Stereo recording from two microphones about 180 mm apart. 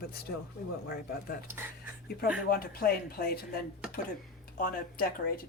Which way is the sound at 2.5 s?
55° left (ahead or behind).